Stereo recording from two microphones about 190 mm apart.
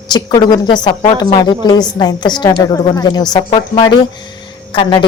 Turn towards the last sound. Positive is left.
turn(degrees=25)  # may be behind; listen again after turning